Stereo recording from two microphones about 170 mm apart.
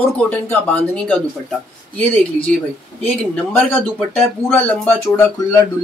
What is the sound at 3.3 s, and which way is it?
Speech, 10° left (ahead or behind).